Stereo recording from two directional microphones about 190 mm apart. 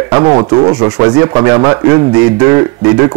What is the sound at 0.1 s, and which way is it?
A man's voice, 20° right (ahead or behind).